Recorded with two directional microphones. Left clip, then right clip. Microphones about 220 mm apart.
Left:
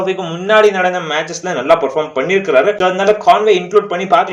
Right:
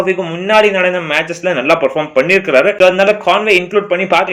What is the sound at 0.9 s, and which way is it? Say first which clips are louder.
Speech: right 2 dB; 65° right (ahead or behind).